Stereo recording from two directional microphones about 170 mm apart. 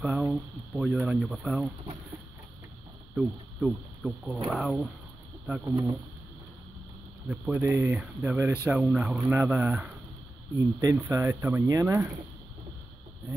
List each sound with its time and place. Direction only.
0.0 s speech: 10° right (ahead or behind)
3.2 s speech: centre (ahead or behind)
5.5 s speech: 10° right (ahead or behind)
7.2 s speech: 5° right (ahead or behind)